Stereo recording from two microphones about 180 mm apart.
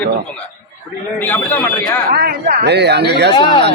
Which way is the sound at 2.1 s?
55° right (ahead or behind).